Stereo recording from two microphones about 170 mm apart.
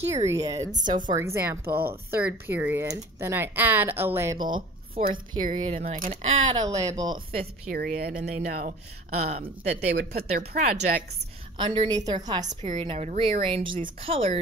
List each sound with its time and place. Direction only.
0.3 s a woman's voice: 20° right (ahead or behind)
1.7 s a woman's voice: 65° right (ahead or behind)
2.1 s speech: 10° right (ahead or behind)
4.4 s speech: 30° right (ahead or behind)
5.4 s speech: 50° right (ahead or behind)
6.5 s a woman's voice: 20° right (ahead or behind)
7.3 s speech: 60° right (ahead or behind); by 9.5 s 40° right (ahead or behind)
9.7 s speech: 70° right (ahead or behind)
10.3 s a woman's voice: 50° right (ahead or behind)
11.5 s a woman's voice: 30° right (ahead or behind)